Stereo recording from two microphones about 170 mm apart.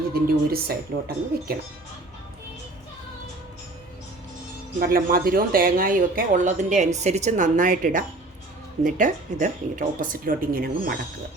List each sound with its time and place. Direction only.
0.1 s speech: 65° right (ahead or behind)
4.8 s speech: 60° right (ahead or behind)